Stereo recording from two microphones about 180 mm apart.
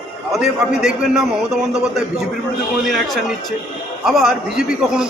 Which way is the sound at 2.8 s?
Centre (ahead or behind).